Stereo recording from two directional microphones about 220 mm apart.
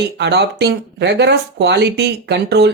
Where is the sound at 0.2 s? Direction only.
50° right (ahead or behind).